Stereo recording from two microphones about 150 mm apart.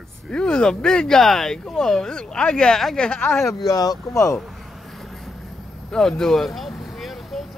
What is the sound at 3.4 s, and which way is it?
Speech, centre (ahead or behind).